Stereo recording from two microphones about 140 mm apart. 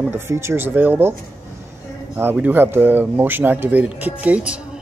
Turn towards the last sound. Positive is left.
turn(degrees=-10)  # may be behind; listen again after turning